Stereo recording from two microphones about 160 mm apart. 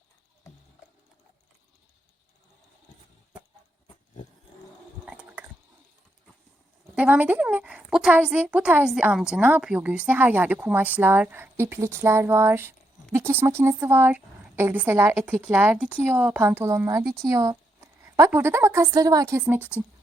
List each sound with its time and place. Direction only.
5.0 s chewing: 10° right (ahead or behind)
6.9 s a woman's voice: 10° right (ahead or behind)